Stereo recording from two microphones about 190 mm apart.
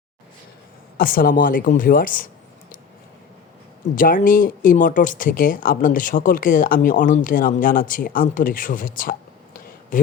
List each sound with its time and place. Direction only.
0.9 s speech: 50° left (ahead or behind)
3.9 s speech: 45° left (ahead or behind)